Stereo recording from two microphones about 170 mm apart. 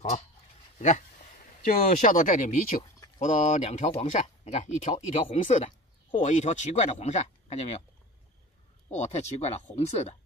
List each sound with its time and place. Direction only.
0.7 s speech: 45° left (ahead or behind)
8.9 s speech: 40° left (ahead or behind)